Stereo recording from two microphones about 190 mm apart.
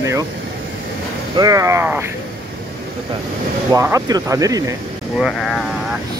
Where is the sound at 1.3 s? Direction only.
20° right (ahead or behind).